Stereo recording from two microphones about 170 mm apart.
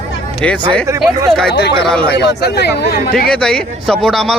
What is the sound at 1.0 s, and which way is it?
A man's voice, centre (ahead or behind).